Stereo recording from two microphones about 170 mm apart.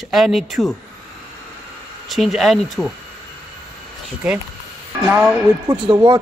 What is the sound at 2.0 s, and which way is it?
Speech, centre (ahead or behind).